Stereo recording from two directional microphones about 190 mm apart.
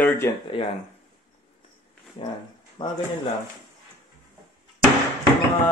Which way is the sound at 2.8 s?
20° left (ahead or behind).